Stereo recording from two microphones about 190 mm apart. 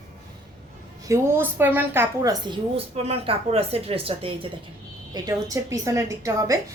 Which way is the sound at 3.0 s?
30° right (ahead or behind).